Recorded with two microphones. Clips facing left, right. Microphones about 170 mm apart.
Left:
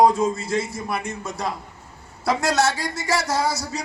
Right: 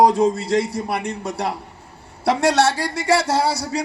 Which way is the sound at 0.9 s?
70° right (ahead or behind).